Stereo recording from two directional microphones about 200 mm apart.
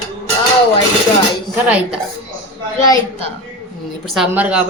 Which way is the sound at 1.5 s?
5° right (ahead or behind).